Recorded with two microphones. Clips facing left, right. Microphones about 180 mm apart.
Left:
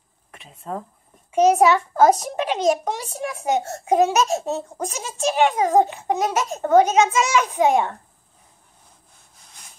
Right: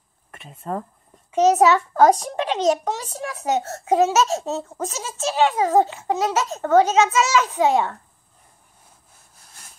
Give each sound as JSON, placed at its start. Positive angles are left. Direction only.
{"t": 0.3, "sound": "speech", "side_deg": 0}
{"t": 1.3, "sound": "a child's voice", "side_deg": 10}